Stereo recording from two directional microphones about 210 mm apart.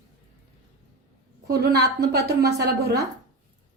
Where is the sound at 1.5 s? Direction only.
50° right (ahead or behind).